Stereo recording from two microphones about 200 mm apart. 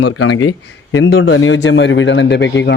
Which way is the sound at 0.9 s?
65° left (ahead or behind).